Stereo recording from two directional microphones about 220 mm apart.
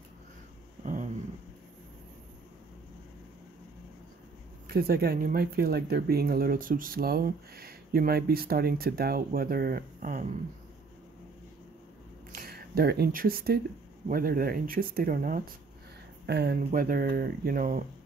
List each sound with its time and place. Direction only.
4.6 s speech: 45° right (ahead or behind)
12.4 s speech: 45° right (ahead or behind)